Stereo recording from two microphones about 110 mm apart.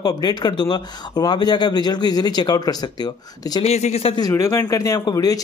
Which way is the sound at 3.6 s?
80° left.